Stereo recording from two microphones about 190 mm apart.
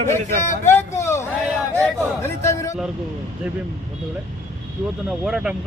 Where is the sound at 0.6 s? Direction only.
15° left (ahead or behind).